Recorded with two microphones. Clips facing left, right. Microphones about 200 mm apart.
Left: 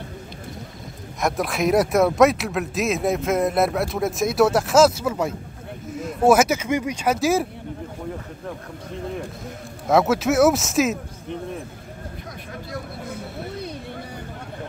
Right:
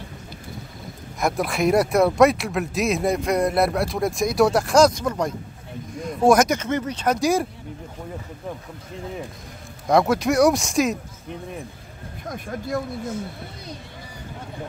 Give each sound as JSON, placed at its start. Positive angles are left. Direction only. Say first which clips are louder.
{"t": 1.2, "sound": "speech", "louder": "right 1 dB", "side_deg": 0}
{"t": 9.8, "sound": "speech", "louder": "even", "side_deg": 5}
{"t": 12.3, "sound": "speech", "louder": "right 10 dB", "side_deg": -50}
{"t": 13.1, "sound": "speech", "louder": "even", "side_deg": 60}